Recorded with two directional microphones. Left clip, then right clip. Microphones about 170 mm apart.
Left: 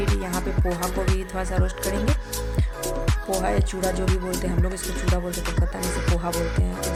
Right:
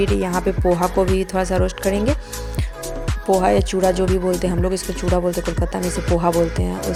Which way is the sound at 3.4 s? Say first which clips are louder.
Right 8 dB; 35° right (ahead or behind).